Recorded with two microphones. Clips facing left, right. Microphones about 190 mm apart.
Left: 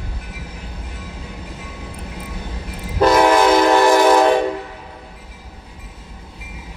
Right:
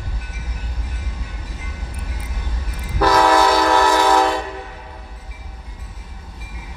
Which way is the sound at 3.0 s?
20° left (ahead or behind).